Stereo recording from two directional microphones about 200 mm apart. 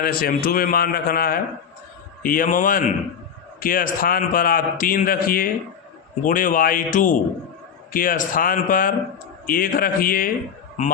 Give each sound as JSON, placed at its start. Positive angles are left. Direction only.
{"t": 0.0, "sound": "a man's voice", "side_deg": 50}